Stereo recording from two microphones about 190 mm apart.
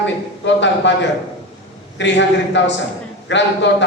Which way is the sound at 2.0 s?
70° left (ahead or behind).